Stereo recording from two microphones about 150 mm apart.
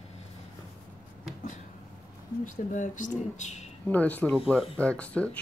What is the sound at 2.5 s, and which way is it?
Speech, 55° left (ahead or behind).